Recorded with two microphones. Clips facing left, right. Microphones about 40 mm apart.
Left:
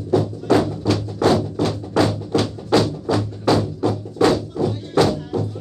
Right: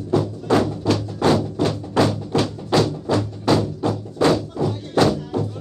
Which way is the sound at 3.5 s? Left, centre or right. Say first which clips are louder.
Left 1 dB; centre.